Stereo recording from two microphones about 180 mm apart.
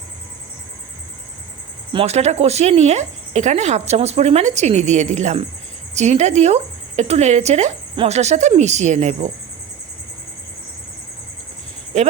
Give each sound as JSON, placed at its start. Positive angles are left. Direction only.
{"t": 1.9, "sound": "speech", "side_deg": -35}